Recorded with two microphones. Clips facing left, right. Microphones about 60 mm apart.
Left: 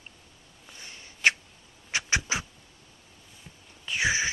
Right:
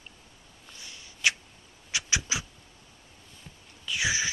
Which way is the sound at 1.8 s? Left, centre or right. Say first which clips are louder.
Left 3 dB; left.